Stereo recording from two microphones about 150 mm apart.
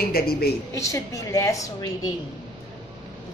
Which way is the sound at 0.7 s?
20° left (ahead or behind).